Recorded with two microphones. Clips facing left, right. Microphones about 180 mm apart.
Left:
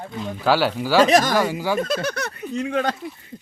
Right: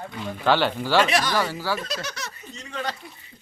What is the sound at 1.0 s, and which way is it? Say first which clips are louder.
Speech: left 8 dB; 45° left (ahead or behind).